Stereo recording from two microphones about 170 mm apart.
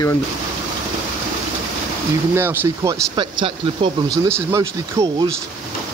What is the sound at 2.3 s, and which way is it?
Speech, 15° right (ahead or behind).